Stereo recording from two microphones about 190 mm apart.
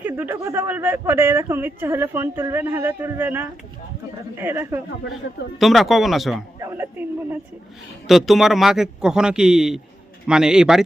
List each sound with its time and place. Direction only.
0.0 s speech: 10° right (ahead or behind)
5.5 s speech: centre (ahead or behind)
6.6 s a sound: 15° right (ahead or behind)
8.0 s speech: centre (ahead or behind)